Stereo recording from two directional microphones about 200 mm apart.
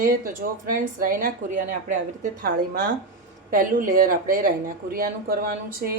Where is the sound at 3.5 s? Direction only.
45° right (ahead or behind).